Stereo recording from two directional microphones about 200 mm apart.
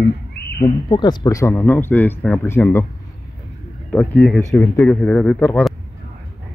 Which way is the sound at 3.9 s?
5° left (ahead or behind).